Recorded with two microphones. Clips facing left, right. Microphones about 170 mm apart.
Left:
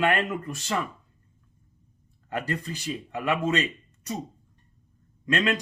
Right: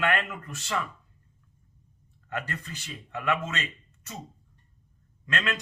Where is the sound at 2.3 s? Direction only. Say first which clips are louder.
Left 5 dB; 35° left (ahead or behind).